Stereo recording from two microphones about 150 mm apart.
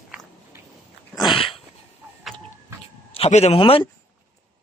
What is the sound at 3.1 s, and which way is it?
Speech, 45° left (ahead or behind).